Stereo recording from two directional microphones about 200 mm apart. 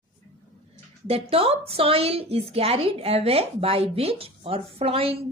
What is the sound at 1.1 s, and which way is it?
A woman's voice, 30° right (ahead or behind).